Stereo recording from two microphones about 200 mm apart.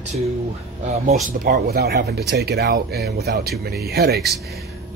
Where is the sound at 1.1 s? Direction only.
45° right (ahead or behind).